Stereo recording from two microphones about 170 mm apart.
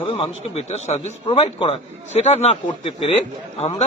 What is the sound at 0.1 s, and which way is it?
A man's voice, 35° left (ahead or behind).